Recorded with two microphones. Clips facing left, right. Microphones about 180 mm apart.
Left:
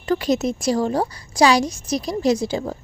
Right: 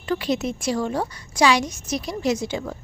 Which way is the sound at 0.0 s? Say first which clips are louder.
Left 4 dB; 40° left (ahead or behind).